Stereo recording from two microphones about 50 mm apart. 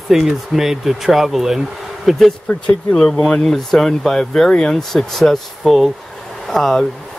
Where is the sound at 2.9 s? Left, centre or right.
Centre.